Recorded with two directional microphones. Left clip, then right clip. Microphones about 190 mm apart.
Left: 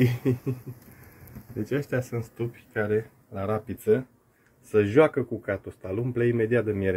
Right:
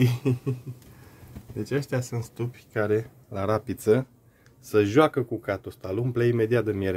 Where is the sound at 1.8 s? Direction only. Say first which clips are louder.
Left 1 dB; 25° right (ahead or behind).